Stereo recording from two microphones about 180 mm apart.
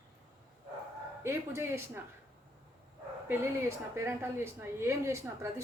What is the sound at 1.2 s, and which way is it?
Speech, 15° right (ahead or behind).